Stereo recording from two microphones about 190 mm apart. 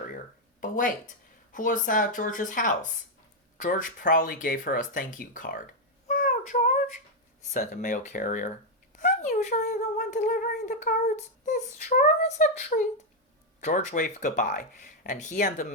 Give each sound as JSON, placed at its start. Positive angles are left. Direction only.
{"t": 0.6, "sound": "a sound", "side_deg": 40}
{"t": 1.5, "sound": "speech", "side_deg": 45}
{"t": 6.1, "sound": "child singing", "side_deg": 45}
{"t": 7.5, "sound": "speech", "side_deg": 45}
{"t": 9.0, "sound": "humming", "side_deg": 40}
{"t": 13.6, "sound": "speech", "side_deg": 40}